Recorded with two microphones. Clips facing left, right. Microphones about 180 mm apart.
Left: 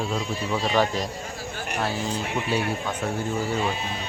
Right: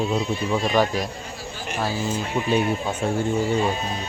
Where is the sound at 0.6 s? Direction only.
10° right (ahead or behind).